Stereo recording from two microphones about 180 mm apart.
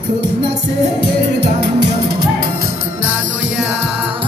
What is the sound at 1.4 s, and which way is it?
Music, 70° right (ahead or behind).